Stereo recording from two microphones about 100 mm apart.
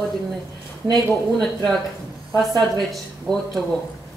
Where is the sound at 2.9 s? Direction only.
Centre (ahead or behind).